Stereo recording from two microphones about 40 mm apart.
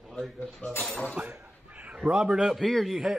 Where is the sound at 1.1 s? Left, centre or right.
Right.